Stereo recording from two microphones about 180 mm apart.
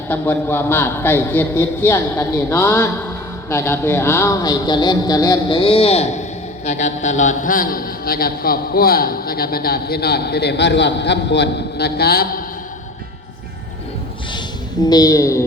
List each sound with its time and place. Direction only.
0.1 s a man's voice: 10° left (ahead or behind); by 12.4 s 55° left (ahead or behind)
14.8 s speech: 20° left (ahead or behind)